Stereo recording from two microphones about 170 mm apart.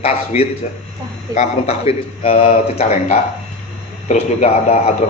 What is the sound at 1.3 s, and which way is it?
A man's voice, 40° left (ahead or behind).